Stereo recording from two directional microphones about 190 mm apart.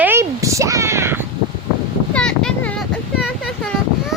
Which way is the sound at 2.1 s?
5° left (ahead or behind).